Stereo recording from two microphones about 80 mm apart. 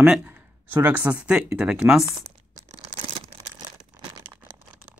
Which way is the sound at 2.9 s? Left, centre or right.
Right.